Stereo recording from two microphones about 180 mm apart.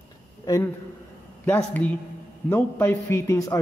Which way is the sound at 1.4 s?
10° left (ahead or behind).